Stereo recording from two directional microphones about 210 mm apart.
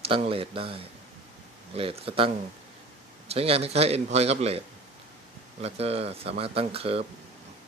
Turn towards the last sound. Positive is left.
turn(degrees=-25)  # may be behind; listen again after turning